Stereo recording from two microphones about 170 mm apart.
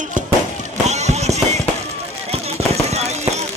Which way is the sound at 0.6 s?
40° right (ahead or behind).